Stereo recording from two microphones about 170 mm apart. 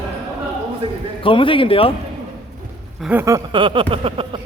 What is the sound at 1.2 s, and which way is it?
Speech, 30° left (ahead or behind).